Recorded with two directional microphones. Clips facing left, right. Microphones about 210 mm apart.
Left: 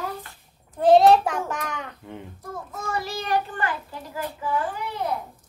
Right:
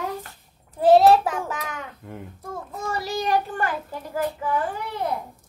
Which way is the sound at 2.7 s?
35° right (ahead or behind).